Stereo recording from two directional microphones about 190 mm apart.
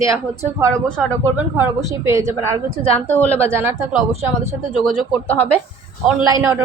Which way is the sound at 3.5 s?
10° right (ahead or behind).